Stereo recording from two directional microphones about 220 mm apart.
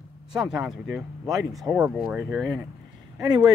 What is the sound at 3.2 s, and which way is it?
Speech, 15° right (ahead or behind).